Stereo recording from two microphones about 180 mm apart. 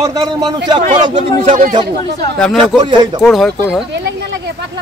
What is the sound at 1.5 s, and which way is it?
Speech, 45° right (ahead or behind).